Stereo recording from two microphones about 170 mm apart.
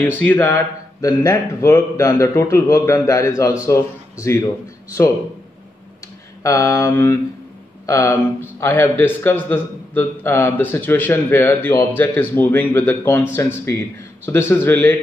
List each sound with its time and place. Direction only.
0.2 s speech: 10° left (ahead or behind)
6.4 s speech: 20° left (ahead or behind)
14.2 s speech: 15° left (ahead or behind)